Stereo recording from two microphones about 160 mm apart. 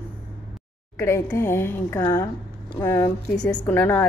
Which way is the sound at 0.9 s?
20° left (ahead or behind).